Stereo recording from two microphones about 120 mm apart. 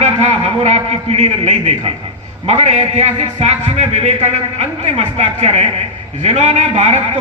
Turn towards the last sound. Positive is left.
turn(degrees=-70)  # may be behind; listen again after turning